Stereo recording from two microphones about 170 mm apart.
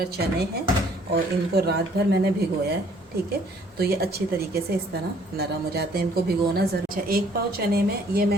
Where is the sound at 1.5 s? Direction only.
70° right (ahead or behind).